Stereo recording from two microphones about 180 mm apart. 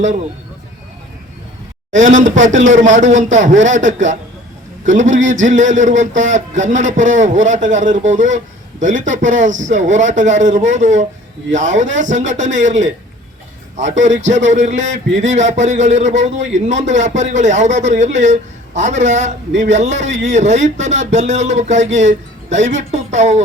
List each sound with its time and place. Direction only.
1.9 s a man's voice: 45° right (ahead or behind)
14.3 s a man's voice: 40° right (ahead or behind)